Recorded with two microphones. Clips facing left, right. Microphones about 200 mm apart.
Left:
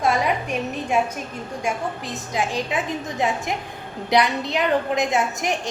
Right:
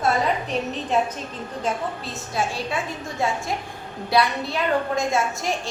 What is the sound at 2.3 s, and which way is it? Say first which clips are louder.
A woman's voice: left 2 dB; 15° left (ahead or behind).